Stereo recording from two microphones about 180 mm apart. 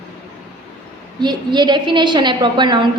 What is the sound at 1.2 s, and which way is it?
A woman's voice, 25° right (ahead or behind).